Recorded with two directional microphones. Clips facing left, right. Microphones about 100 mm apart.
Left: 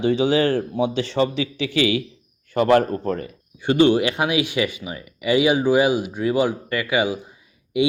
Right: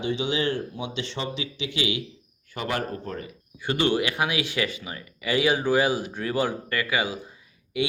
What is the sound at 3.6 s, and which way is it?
Speech, 20° left (ahead or behind).